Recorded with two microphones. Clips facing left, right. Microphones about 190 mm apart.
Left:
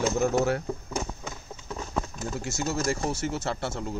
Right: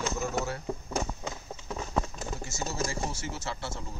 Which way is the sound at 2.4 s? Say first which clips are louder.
Left 5 dB; 65° left (ahead or behind).